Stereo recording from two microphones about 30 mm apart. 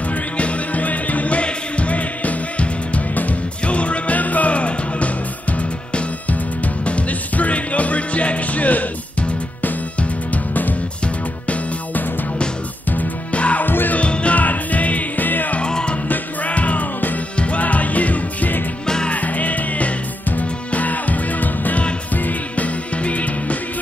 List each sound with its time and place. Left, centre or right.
0.4 s music: left
4.2 s music: left
6.6 s music: left
13.3 s music: left
13.6 s music: left
13.9 s music: left
14.3 s music: left
15.1 s music: left
15.6 s music: left
16.4 s music: left
23.0 s music: left